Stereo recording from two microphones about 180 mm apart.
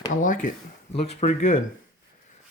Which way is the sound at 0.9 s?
35° left (ahead or behind).